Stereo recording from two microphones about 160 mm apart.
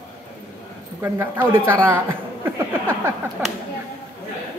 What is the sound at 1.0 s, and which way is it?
Speech, 15° right (ahead or behind).